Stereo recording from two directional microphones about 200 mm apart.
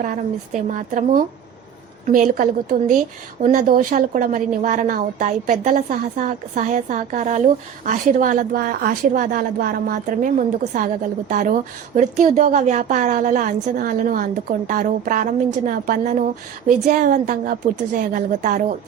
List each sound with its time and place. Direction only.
0.0 s a woman's voice: 40° right (ahead or behind)